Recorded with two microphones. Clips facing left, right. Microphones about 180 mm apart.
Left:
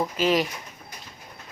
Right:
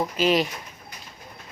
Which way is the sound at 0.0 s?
15° right (ahead or behind).